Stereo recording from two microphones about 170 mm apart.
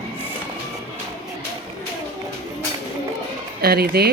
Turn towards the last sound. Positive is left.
turn(degrees=-65)  # may be behind; listen again after turning